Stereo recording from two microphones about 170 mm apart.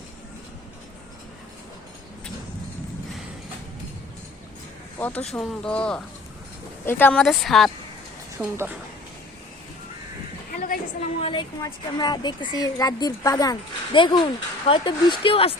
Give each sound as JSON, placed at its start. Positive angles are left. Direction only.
{"t": 4.9, "sound": "speech", "side_deg": 10}
{"t": 8.4, "sound": "speech", "side_deg": -10}
{"t": 11.2, "sound": "speech", "side_deg": 30}